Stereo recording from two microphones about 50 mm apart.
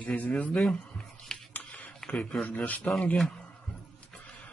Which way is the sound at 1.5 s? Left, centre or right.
Left.